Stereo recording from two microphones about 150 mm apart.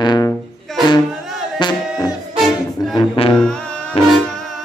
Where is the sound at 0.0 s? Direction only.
30° left (ahead or behind).